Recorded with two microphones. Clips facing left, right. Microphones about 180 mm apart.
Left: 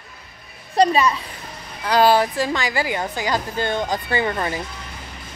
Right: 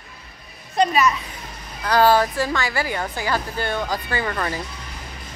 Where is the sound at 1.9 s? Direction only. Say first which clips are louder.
Left 1 dB; 15° left (ahead or behind).